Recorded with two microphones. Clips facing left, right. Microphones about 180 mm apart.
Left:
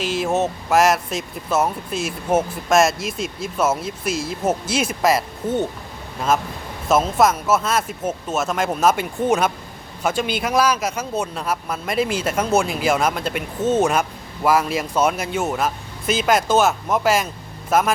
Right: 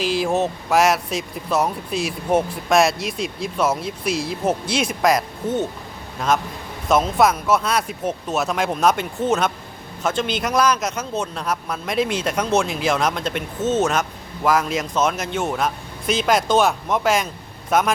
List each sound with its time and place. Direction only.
0.0 s speech: centre (ahead or behind)
6.8 s a man's voice: 5° left (ahead or behind)